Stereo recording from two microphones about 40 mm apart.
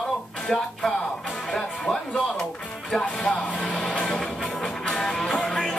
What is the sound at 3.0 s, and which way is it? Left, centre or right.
Music, left.